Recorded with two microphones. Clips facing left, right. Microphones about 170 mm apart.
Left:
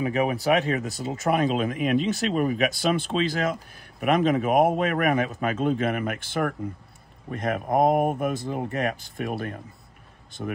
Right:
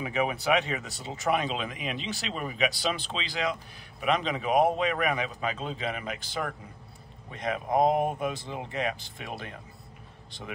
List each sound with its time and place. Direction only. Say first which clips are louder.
0.0 s speech: left 5 dB; 40° left (ahead or behind)